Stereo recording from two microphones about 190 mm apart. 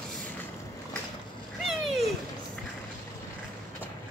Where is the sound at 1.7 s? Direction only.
Centre (ahead or behind).